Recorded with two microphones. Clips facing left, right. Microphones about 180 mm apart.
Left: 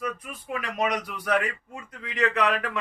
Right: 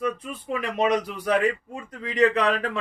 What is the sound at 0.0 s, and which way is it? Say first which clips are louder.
Speech: right 5 dB; 30° right (ahead or behind).